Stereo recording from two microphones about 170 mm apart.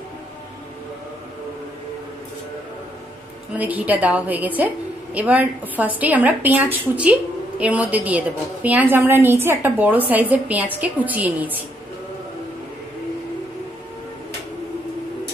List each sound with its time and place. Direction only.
3.5 s a woman's voice: 10° right (ahead or behind)